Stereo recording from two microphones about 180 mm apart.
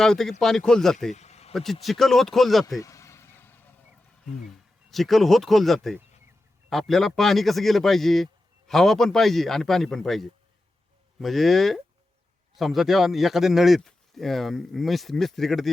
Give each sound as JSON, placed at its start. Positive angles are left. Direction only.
{"t": 0.0, "sound": "a man's voice", "side_deg": 0}
{"t": 1.1, "sound": "a sound", "side_deg": 40}
{"t": 1.5, "sound": "a man's voice", "side_deg": 0}
{"t": 2.7, "sound": "vehicle", "side_deg": 20}
{"t": 4.9, "sound": "a man's voice", "side_deg": 0}